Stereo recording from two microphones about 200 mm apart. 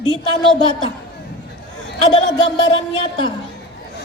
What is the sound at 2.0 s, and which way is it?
A woman's voice, 25° left (ahead or behind).